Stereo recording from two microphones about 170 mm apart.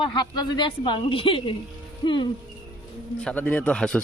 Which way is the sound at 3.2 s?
10° left (ahead or behind).